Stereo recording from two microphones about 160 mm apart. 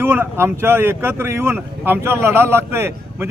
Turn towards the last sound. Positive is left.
turn(degrees=-15)  # may be behind; listen again after turning